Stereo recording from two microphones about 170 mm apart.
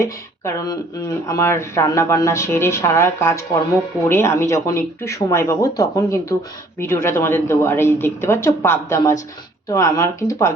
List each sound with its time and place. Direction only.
0.0 s speech: 15° left (ahead or behind)